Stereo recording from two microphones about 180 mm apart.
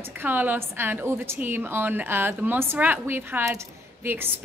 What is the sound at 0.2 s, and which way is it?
A woman's voice, 10° right (ahead or behind).